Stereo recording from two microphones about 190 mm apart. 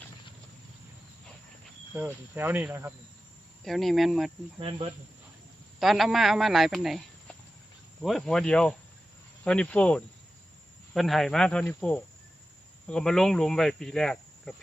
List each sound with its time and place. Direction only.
1.9 s speech: 10° right (ahead or behind)
3.6 s speech: centre (ahead or behind)
4.6 s speech: 30° right (ahead or behind)
5.8 s speech: centre (ahead or behind)